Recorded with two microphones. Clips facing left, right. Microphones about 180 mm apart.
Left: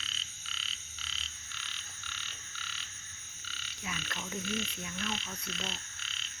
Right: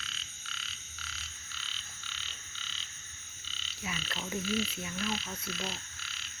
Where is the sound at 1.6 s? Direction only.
15° left (ahead or behind).